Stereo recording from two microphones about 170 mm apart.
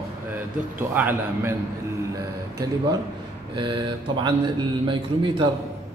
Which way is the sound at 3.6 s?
30° right (ahead or behind).